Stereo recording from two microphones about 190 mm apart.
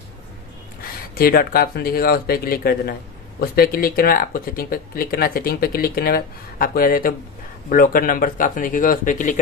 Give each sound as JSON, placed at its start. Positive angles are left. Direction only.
{"t": 1.1, "sound": "speech", "side_deg": 50}